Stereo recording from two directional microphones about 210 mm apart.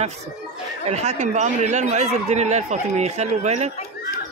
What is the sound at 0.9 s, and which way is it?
Speech, 30° right (ahead or behind).